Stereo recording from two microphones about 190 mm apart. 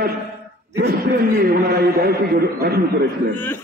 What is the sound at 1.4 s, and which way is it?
A man's voice, 55° right (ahead or behind).